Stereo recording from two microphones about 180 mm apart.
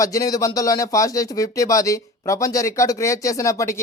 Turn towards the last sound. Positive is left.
turn(degrees=15)  # may be behind; listen again after turning